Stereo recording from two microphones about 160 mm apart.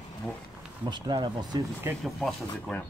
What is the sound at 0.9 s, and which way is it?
Speech, 30° right (ahead or behind).